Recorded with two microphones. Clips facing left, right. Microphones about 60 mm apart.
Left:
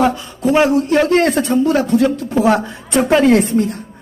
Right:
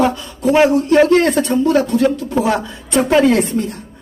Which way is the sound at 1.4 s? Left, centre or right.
Left.